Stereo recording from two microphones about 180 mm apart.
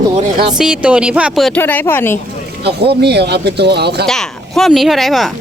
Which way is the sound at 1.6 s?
10° left (ahead or behind).